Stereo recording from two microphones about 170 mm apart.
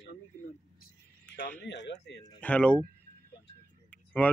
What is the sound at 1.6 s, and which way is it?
Speech, 90° left.